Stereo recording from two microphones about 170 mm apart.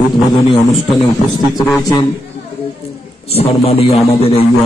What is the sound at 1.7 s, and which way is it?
Speech, 20° left (ahead or behind).